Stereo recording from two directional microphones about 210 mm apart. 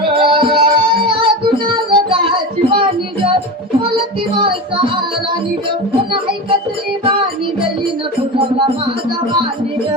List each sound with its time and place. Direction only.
0.2 s music: 25° right (ahead or behind)
8.4 s music: 25° right (ahead or behind)